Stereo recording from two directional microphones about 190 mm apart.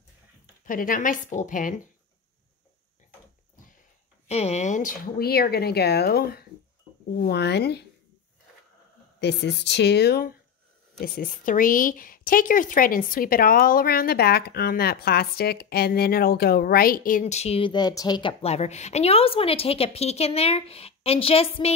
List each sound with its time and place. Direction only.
0.7 s a woman's voice: 45° left (ahead or behind)
4.3 s speech: 35° left (ahead or behind); by 7.8 s 60° left (ahead or behind)
9.2 s a woman's voice: 65° left (ahead or behind); by 21.7 s 30° left (ahead or behind)